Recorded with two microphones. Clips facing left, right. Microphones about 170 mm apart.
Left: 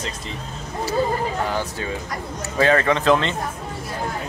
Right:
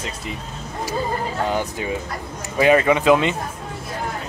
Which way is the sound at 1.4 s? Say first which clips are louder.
Right 2 dB; 20° right (ahead or behind).